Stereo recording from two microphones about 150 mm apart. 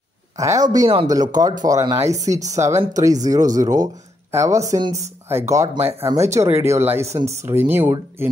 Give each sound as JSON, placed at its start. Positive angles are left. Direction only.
{"t": 0.4, "sound": "speech", "side_deg": -25}